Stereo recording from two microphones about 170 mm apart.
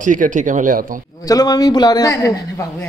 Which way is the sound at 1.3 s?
20° left (ahead or behind).